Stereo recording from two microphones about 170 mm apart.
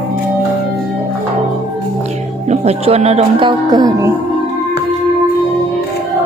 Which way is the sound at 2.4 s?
40° right (ahead or behind).